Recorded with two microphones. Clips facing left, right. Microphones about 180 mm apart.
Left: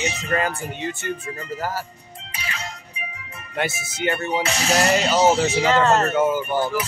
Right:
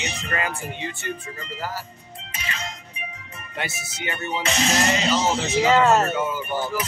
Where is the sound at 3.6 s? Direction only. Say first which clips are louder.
Left 7 dB; 60° left (ahead or behind).